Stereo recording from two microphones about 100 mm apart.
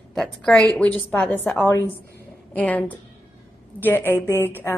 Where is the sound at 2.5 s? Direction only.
15° left (ahead or behind).